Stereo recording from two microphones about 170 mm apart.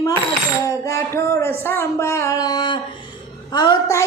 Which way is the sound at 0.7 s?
20° left (ahead or behind).